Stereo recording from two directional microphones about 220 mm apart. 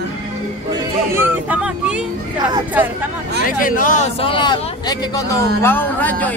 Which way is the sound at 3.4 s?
40° left (ahead or behind).